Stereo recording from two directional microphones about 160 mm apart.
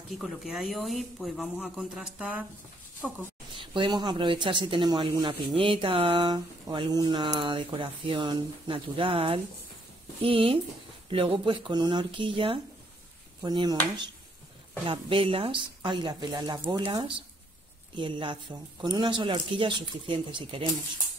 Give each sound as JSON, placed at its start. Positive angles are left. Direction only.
{"t": 0.1, "sound": "speech", "side_deg": 0}
{"t": 3.7, "sound": "speech", "side_deg": -30}